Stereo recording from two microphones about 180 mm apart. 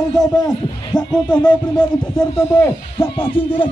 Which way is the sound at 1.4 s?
25° left (ahead or behind).